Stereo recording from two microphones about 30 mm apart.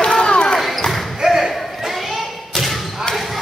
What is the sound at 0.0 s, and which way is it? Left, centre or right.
Basketball bounce, left.